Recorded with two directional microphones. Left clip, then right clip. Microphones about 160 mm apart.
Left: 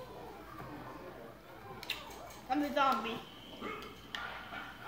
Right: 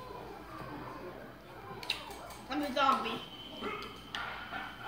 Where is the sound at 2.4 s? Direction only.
55° left (ahead or behind).